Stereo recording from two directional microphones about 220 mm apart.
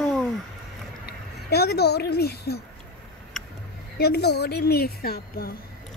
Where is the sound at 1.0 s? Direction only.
45° left (ahead or behind).